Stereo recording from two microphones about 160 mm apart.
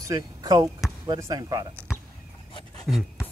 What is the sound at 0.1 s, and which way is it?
Speech, 25° right (ahead or behind).